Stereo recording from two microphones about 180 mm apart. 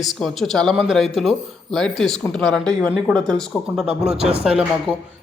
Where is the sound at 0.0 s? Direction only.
Centre (ahead or behind).